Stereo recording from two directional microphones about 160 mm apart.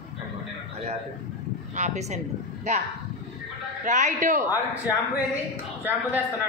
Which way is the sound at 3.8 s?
50° right (ahead or behind).